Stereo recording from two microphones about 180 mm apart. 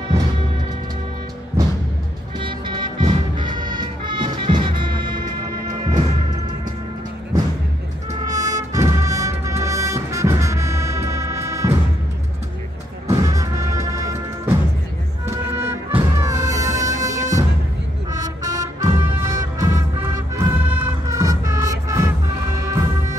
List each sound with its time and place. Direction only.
2.3 s music: 25° right (ahead or behind)
8.3 s music: 20° right (ahead or behind)
13.1 s music: 20° right (ahead or behind)